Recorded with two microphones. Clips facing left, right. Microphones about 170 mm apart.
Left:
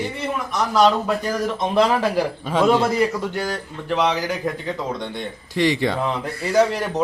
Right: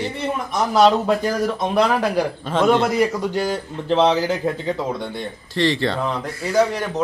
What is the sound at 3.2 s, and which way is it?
Speech, 20° right (ahead or behind).